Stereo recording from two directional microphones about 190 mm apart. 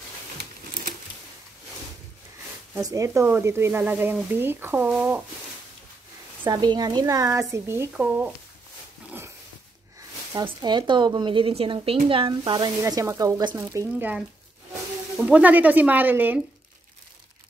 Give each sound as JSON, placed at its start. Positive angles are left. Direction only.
{"t": 2.8, "sound": "speech", "side_deg": -20}
{"t": 6.4, "sound": "speech", "side_deg": -25}
{"t": 9.9, "sound": "speech", "side_deg": -20}